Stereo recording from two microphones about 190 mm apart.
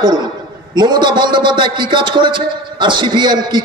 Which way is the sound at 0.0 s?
20° right (ahead or behind).